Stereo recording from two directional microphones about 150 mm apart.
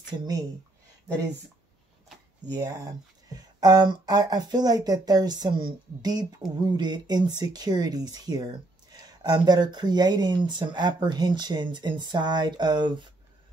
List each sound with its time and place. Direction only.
0.2 s speech: 25° right (ahead or behind)
2.4 s speech: 25° right (ahead or behind)